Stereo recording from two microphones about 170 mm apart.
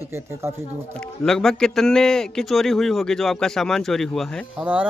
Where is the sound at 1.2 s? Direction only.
5° left (ahead or behind).